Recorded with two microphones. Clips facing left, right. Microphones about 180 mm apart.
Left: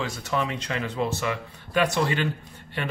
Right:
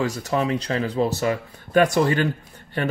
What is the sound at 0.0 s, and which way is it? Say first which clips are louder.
Speech: right 5 dB; 40° right (ahead or behind).